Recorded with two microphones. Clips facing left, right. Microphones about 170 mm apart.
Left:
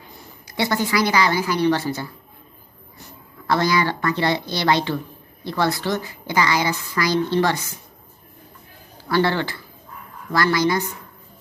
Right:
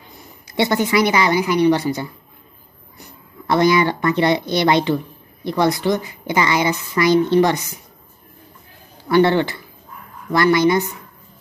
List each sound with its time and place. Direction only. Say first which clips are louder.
0.5 s a woman's voice: right 4 dB; 20° right (ahead or behind)
3.4 s a woman's voice: right 5 dB; 20° right (ahead or behind)
9.1 s a woman's voice: right 6 dB; 20° right (ahead or behind)